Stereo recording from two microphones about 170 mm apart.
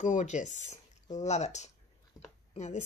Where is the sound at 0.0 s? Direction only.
45° left (ahead or behind).